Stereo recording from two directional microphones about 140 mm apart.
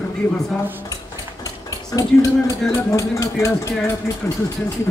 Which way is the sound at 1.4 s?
25° left (ahead or behind).